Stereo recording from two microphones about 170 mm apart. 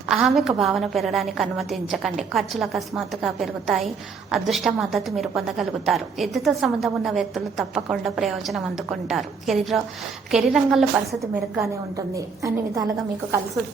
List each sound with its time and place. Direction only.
0.1 s a woman's voice: centre (ahead or behind)
11.2 s a woman's voice: 15° right (ahead or behind)